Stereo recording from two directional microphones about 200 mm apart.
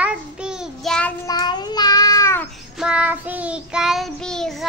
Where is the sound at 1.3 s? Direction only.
20° left (ahead or behind).